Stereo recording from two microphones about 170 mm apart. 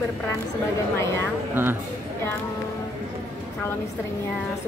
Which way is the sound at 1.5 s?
10° right (ahead or behind).